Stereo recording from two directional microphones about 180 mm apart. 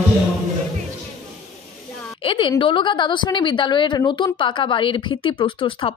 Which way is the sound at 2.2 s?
30° left (ahead or behind).